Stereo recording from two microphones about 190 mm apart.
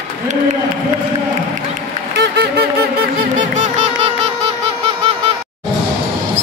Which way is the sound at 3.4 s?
40° right (ahead or behind).